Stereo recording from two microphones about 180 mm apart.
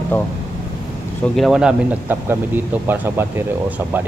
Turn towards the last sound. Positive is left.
turn(degrees=-10)  # may be behind; listen again after turning